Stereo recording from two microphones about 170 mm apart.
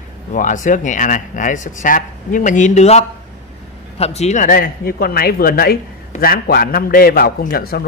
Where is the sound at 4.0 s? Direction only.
40° left (ahead or behind).